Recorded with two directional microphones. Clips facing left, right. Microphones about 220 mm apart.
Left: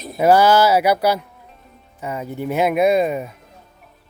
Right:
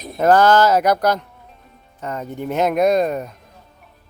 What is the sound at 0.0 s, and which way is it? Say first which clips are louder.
Speech: even; 5° left (ahead or behind).